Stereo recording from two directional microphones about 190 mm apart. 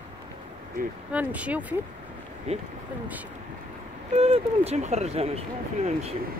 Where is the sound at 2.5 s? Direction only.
35° right (ahead or behind).